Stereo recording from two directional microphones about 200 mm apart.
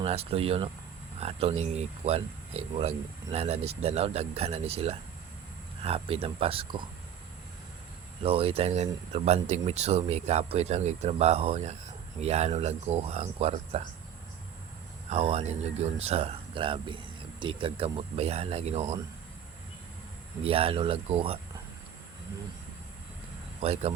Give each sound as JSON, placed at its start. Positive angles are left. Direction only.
{"t": 0.0, "sound": "speech", "side_deg": -30}
{"t": 8.2, "sound": "speech", "side_deg": -30}
{"t": 15.1, "sound": "speech", "side_deg": -30}
{"t": 20.4, "sound": "speech", "side_deg": -30}
{"t": 23.6, "sound": "speech", "side_deg": -30}